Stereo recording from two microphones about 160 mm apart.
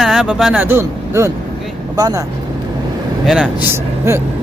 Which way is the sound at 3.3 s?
10° right (ahead or behind).